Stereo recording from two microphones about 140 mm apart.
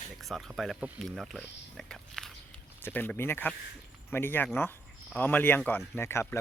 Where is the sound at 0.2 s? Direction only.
Centre (ahead or behind).